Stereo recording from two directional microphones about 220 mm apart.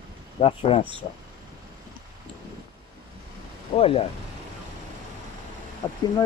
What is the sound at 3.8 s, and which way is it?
Speech, 25° left (ahead or behind).